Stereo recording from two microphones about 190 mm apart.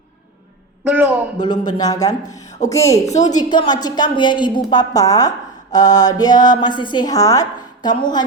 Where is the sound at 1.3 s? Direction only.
20° left (ahead or behind).